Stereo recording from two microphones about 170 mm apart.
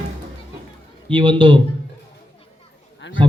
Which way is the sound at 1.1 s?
30° right (ahead or behind).